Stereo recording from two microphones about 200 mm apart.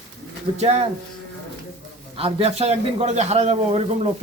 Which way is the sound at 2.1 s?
30° right (ahead or behind).